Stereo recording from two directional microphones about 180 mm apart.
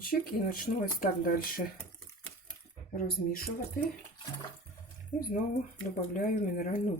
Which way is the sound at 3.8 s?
50° left (ahead or behind).